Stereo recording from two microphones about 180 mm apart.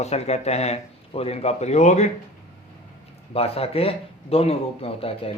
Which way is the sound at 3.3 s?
35° left (ahead or behind).